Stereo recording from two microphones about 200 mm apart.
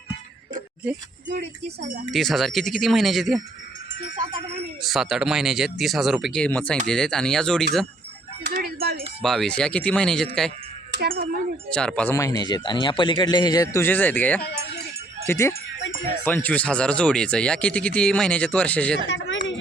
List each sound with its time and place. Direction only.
1.6 s speech: 35° right (ahead or behind)
2.0 s speech: centre (ahead or behind)
4.1 s speech: 40° right (ahead or behind)
4.8 s speech: centre (ahead or behind)
8.4 s a sound: 55° right (ahead or behind)
9.2 s speech: centre (ahead or behind)
10.9 s speech: 55° right (ahead or behind)
11.7 s a man's voice: 5° left (ahead or behind)
19.0 s a sound: 70° left (ahead or behind)